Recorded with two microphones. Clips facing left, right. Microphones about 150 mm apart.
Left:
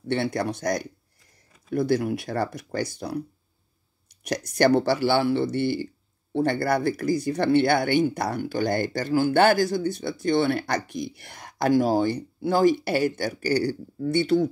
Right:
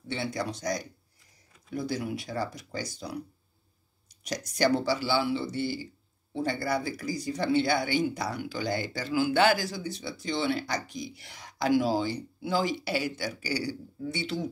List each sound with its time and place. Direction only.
0.1 s speech: 60° left (ahead or behind)